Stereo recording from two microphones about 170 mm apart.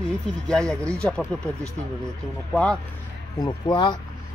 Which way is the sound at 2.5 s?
5° left (ahead or behind).